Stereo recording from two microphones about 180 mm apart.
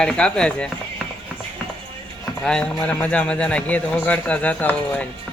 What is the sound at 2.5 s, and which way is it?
A man's voice, 5° left (ahead or behind).